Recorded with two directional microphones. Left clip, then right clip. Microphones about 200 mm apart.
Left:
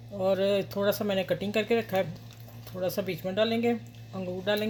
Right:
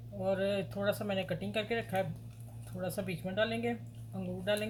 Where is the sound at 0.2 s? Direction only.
45° left (ahead or behind).